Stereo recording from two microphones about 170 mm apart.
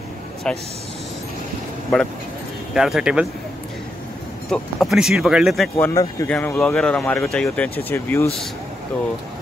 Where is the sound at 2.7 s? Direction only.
Centre (ahead or behind).